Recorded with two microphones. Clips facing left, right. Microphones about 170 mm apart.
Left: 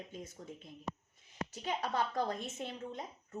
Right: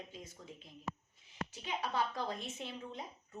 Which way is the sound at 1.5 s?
45° left (ahead or behind).